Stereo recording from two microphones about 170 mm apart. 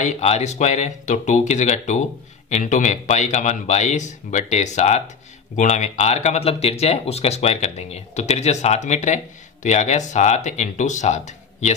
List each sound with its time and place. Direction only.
0.0 s speech: 40° left (ahead or behind)